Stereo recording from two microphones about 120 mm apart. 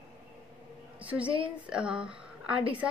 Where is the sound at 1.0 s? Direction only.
10° right (ahead or behind).